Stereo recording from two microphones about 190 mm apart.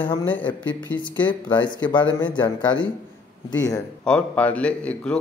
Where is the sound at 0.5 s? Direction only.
10° left (ahead or behind).